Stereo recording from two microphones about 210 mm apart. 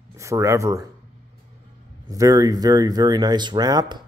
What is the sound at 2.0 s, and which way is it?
Speech, 15° right (ahead or behind).